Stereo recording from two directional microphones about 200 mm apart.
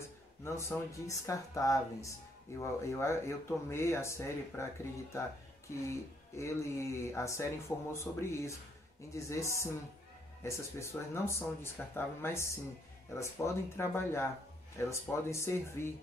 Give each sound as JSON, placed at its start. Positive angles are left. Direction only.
{"t": 0.4, "sound": "speech", "side_deg": 15}
{"t": 5.9, "sound": "speech", "side_deg": 15}